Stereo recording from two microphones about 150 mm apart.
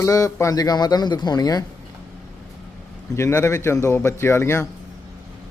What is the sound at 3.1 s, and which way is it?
A man's voice, 20° left (ahead or behind).